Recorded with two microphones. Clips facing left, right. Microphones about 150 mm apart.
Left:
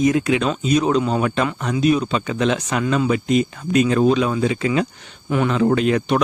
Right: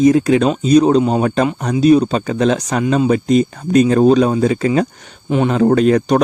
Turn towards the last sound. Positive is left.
turn(degrees=-40)  # may be behind; listen again after turning